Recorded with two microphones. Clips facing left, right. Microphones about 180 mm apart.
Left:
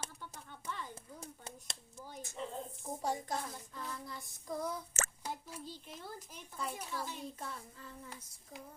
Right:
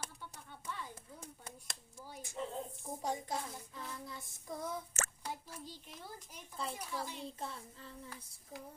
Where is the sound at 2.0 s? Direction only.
5° right (ahead or behind).